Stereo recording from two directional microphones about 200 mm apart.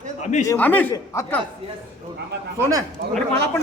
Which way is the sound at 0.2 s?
35° left (ahead or behind).